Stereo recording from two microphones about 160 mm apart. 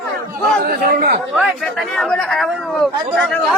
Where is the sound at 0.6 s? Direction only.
70° right (ahead or behind).